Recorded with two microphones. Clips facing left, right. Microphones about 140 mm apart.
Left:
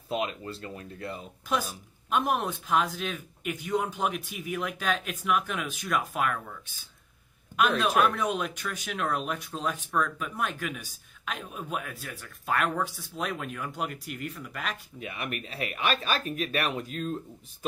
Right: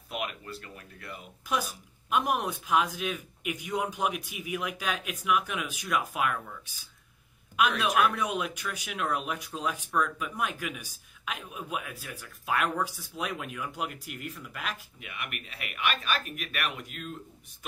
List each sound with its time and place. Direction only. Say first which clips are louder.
0.1 s speech: left 5 dB; 25° left (ahead or behind)
2.0 s speech: left 1 dB; 5° right (ahead or behind)
8.2 s speech: left 2 dB; 10° right (ahead or behind)
15.0 s speech: left 5 dB; 35° left (ahead or behind)